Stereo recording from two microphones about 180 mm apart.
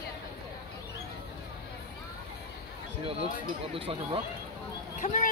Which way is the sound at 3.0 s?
30° right (ahead or behind).